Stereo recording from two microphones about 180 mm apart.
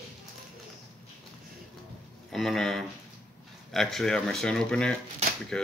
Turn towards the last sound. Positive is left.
turn(degrees=5)  # may be behind; listen again after turning